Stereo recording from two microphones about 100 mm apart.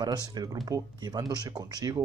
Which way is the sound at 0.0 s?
45° right (ahead or behind).